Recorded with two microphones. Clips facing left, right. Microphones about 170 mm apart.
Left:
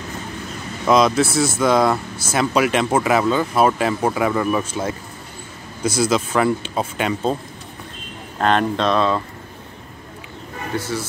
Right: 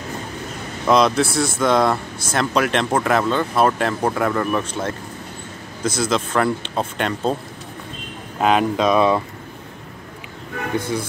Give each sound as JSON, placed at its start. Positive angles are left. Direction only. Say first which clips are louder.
{"t": 0.8, "sound": "speech", "louder": "left 1 dB", "side_deg": 0}
{"t": 8.4, "sound": "speech", "louder": "right 1 dB", "side_deg": -5}
{"t": 10.9, "sound": "speech", "louder": "right 1 dB", "side_deg": -15}